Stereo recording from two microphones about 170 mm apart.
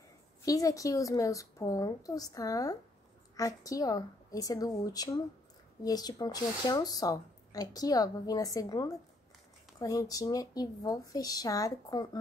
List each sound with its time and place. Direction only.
0.5 s speech: 20° left (ahead or behind)